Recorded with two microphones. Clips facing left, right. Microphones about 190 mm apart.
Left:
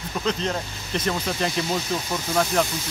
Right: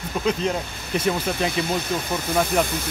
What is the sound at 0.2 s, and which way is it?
Speech, 10° right (ahead or behind).